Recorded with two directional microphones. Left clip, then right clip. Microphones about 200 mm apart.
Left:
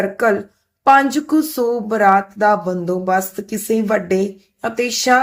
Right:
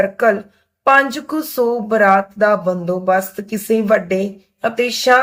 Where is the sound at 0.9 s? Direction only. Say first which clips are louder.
Left 1 dB; 50° left (ahead or behind).